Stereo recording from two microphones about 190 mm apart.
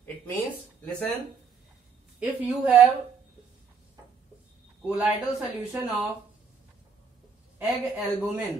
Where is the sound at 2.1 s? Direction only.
10° right (ahead or behind).